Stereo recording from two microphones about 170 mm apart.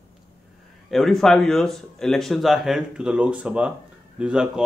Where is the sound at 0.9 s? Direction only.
Centre (ahead or behind).